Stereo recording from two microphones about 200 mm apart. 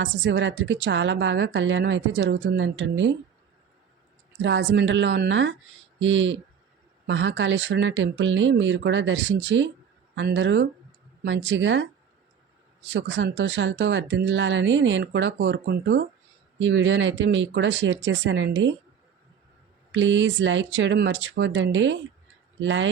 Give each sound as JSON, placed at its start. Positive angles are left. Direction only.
{"t": 0.0, "sound": "a woman's voice", "side_deg": -65}
{"t": 4.4, "sound": "a woman's voice", "side_deg": -65}
{"t": 19.9, "sound": "a woman's voice", "side_deg": -70}